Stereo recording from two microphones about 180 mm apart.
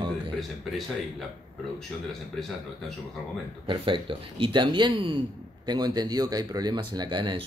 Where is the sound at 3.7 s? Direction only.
30° right (ahead or behind).